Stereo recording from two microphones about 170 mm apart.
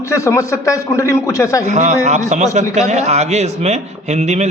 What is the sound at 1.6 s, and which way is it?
A man's voice, 40° right (ahead or behind).